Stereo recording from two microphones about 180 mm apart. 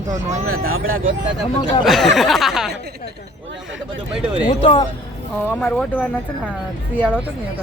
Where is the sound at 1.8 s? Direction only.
Centre (ahead or behind).